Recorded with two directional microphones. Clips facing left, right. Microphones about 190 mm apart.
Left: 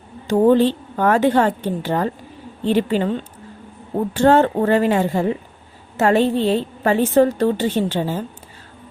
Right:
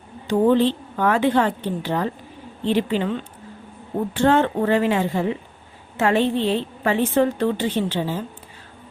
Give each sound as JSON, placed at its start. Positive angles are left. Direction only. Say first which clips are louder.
{"t": 0.3, "sound": "a woman's voice", "louder": "left 3 dB", "side_deg": 45}